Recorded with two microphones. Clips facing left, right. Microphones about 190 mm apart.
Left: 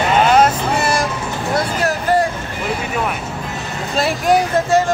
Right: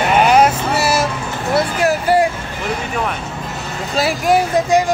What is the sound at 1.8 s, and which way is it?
Vehicle, 10° right (ahead or behind).